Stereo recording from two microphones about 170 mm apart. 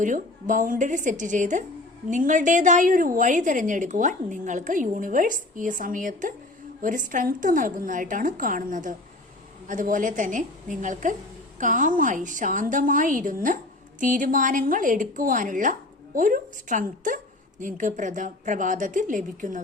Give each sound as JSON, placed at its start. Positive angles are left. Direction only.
{"t": 0.0, "sound": "a woman's voice", "side_deg": -50}